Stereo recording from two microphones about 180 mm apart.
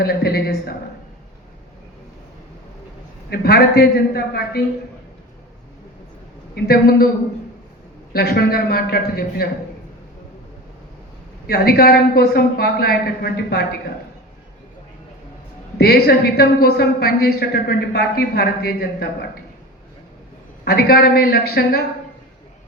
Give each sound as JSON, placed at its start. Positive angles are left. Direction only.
{"t": 0.0, "sound": "a woman's voice", "side_deg": 60}
{"t": 3.2, "sound": "a woman's voice", "side_deg": 60}
{"t": 6.5, "sound": "a woman's voice", "side_deg": 60}
{"t": 8.1, "sound": "a woman's voice", "side_deg": 60}
{"t": 11.4, "sound": "a woman's voice", "side_deg": 60}
{"t": 15.8, "sound": "a woman's voice", "side_deg": 60}
{"t": 20.7, "sound": "a woman's voice", "side_deg": 60}